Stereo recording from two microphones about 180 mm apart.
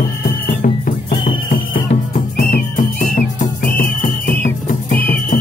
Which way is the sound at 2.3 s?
50° left (ahead or behind).